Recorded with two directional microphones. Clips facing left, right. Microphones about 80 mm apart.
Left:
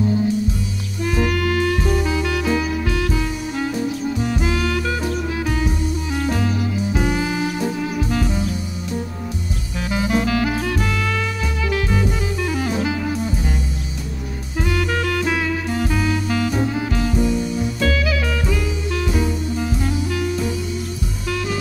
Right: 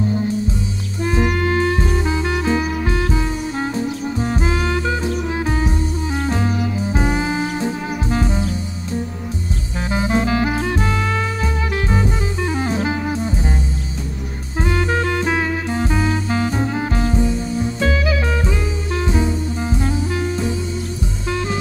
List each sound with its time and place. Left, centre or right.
1.0 s music: right
9.8 s music: right
14.6 s music: right